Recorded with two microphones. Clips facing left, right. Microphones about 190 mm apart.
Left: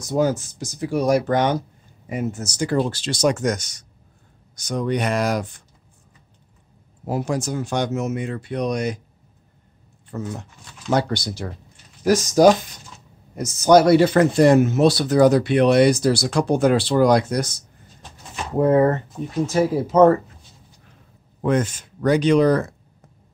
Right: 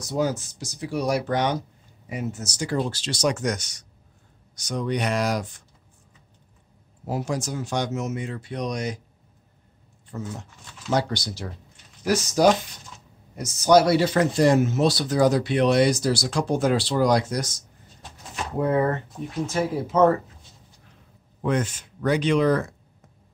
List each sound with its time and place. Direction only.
0.1 s speech: 50° left (ahead or behind)
7.1 s speech: 55° left (ahead or behind)
10.1 s speech: 65° left (ahead or behind)
12.0 s speech: 45° left (ahead or behind)
18.6 s speech: 40° left (ahead or behind)
21.4 s speech: 45° left (ahead or behind)